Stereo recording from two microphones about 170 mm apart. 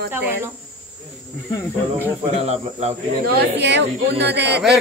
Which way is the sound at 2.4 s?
40° right (ahead or behind).